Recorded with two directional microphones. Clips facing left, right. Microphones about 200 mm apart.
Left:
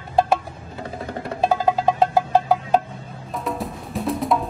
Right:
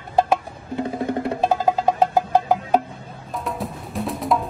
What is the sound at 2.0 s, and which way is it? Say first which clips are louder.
Music: even; 15° right (ahead or behind).